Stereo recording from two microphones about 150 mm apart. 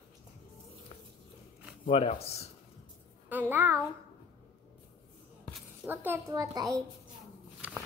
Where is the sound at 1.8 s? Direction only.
40° left (ahead or behind).